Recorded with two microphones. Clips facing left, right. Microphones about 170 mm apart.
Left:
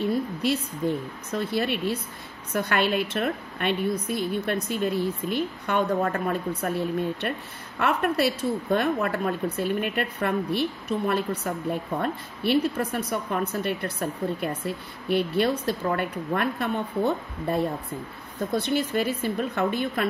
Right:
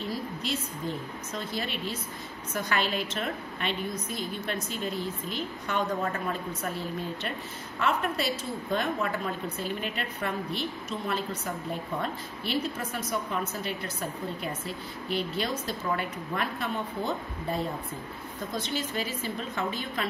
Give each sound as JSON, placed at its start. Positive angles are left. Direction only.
{"t": 0.0, "sound": "a woman's voice", "side_deg": 60}